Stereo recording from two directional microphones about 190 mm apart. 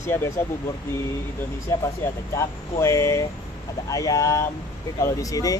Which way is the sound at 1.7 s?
15° left (ahead or behind).